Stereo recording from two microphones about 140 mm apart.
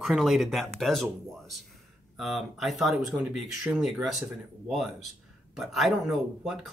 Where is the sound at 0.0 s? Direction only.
Centre (ahead or behind).